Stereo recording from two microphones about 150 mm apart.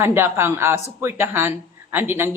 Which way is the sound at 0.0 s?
15° right (ahead or behind).